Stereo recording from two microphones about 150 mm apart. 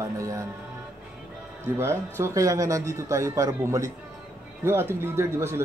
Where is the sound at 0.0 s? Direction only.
20° right (ahead or behind).